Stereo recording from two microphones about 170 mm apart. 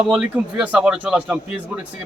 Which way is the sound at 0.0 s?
5° right (ahead or behind).